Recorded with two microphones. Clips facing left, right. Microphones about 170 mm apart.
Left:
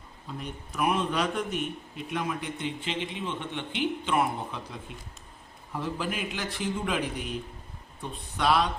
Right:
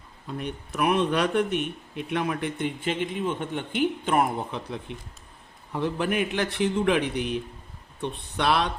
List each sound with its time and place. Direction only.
0.3 s a man's voice: 65° right (ahead or behind)
5.8 s a man's voice: 60° right (ahead or behind)